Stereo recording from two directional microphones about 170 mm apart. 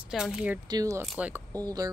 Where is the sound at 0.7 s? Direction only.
20° right (ahead or behind).